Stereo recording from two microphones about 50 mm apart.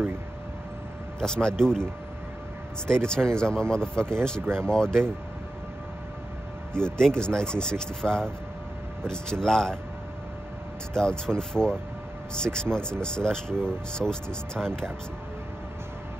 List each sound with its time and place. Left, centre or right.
1.2 s speech: centre
2.9 s speech: centre
4.4 s speech: right
4.6 s speech: centre
6.7 s speech: centre
10.9 s speech: centre